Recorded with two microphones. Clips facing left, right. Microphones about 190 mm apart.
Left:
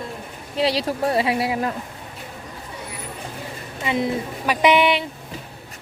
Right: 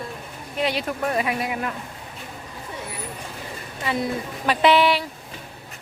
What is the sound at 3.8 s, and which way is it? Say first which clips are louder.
A woman's voice: left 3 dB; 20° left (ahead or behind).